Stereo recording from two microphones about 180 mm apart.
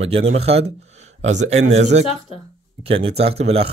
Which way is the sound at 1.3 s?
40° right (ahead or behind).